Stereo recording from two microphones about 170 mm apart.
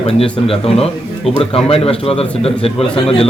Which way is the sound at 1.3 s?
35° left (ahead or behind).